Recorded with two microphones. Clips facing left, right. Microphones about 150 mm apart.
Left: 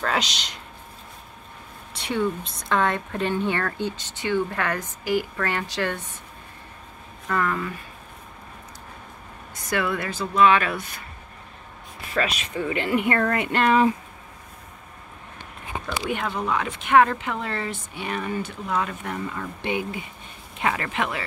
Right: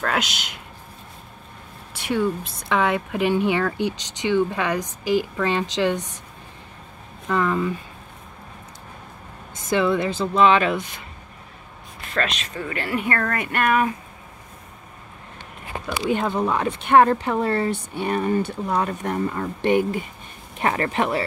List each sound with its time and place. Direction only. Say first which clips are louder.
0.0 s speech: right 1 dB; centre (ahead or behind)
2.0 s speech: right 2 dB; 5° right (ahead or behind)
7.2 s speech: right 4 dB; 15° right (ahead or behind)
9.6 s speech: right 5 dB; 25° right (ahead or behind)
12.1 s speech: even; 10° left (ahead or behind); by 13.9 s 25° left (ahead or behind)
16.1 s speech: right 5 dB; 30° right (ahead or behind)